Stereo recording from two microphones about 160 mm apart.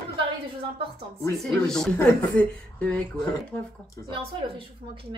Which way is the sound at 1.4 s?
Centre (ahead or behind).